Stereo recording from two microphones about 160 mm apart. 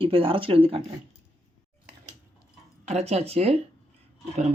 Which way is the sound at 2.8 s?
40° right (ahead or behind).